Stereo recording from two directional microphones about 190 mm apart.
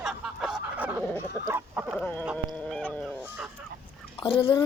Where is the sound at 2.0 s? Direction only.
10° left (ahead or behind).